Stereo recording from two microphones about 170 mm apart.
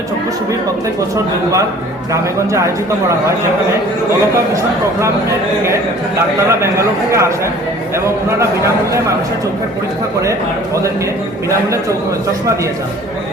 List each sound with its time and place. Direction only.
2.1 s a man's voice: 15° right (ahead or behind)
4.5 s a man's voice: 15° right (ahead or behind)
6.5 s a man's voice: 15° right (ahead or behind)
8.4 s a man's voice: 15° right (ahead or behind)